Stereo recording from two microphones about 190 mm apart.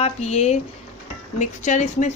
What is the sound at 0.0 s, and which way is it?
A woman's voice, 35° left (ahead or behind).